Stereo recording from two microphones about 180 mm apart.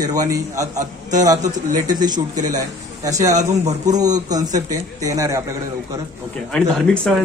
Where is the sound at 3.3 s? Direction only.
40° right (ahead or behind).